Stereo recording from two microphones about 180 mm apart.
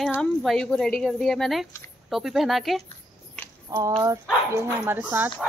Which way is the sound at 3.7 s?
20° right (ahead or behind).